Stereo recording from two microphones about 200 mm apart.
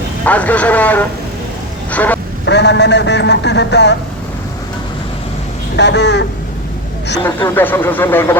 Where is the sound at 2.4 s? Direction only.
60° left (ahead or behind).